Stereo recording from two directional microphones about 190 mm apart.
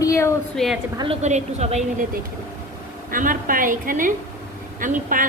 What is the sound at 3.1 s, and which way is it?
A woman's voice, 45° right (ahead or behind).